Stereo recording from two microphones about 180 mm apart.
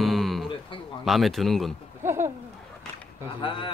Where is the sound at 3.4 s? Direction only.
30° left (ahead or behind).